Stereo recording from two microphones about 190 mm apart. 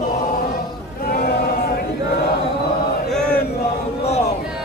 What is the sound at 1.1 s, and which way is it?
Sheep, 55° left (ahead or behind).